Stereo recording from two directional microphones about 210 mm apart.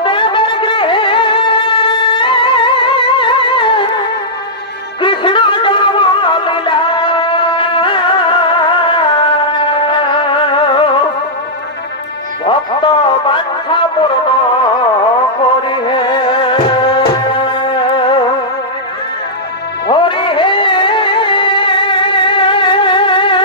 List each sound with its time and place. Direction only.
0.0 s music: 25° left (ahead or behind)
5.0 s music: 25° left (ahead or behind)
12.4 s music: 25° left (ahead or behind)
19.9 s music: 25° left (ahead or behind)